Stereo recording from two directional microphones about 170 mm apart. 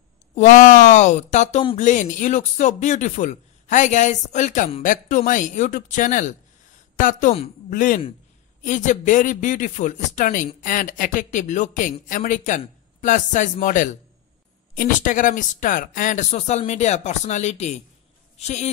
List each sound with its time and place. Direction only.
0.4 s a woman's voice: 45° left (ahead or behind)